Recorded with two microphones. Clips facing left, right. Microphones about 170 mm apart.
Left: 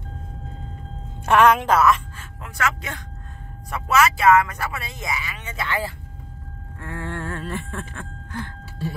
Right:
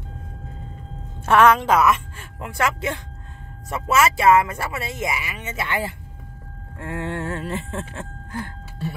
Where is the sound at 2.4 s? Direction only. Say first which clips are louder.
Right 3 dB; 30° right (ahead or behind).